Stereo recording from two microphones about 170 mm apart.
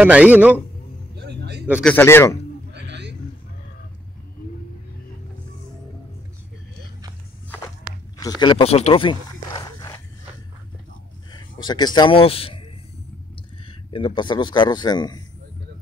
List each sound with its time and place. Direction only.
0.0 s a man's voice: 10° right (ahead or behind)
1.1 s vehicle: 80° right
1.8 s speech: 10° left (ahead or behind)
2.7 s a sound: 90° right
8.2 s a sound: 25° left (ahead or behind)
11.3 s speech: 25° left (ahead or behind)
13.7 s a man's voice: 30° left (ahead or behind)